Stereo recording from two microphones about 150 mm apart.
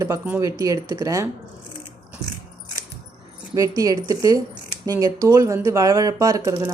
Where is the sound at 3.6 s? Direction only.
20° right (ahead or behind).